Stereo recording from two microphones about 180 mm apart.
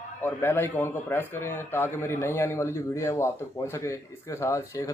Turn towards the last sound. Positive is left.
turn(degrees=15)  # may be behind; listen again after turning